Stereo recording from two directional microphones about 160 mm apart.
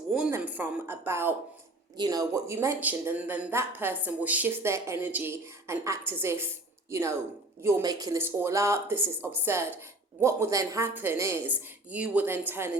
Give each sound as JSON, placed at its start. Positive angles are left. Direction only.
{"t": 0.3, "sound": "a woman's voice", "side_deg": -15}
{"t": 7.6, "sound": "speech", "side_deg": -20}